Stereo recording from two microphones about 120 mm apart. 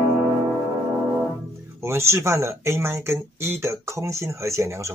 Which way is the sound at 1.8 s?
20° right (ahead or behind).